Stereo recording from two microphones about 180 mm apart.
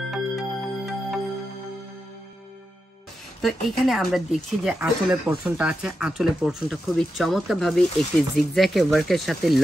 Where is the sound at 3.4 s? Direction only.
Centre (ahead or behind).